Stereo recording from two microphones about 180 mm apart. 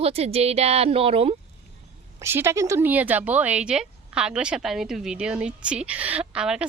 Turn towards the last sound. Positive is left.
turn(degrees=-5)  # may be behind; listen again after turning